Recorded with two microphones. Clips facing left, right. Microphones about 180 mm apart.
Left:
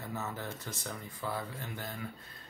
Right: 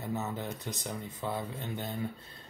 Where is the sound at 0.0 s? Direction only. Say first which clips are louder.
Right 4 dB; 20° right (ahead or behind).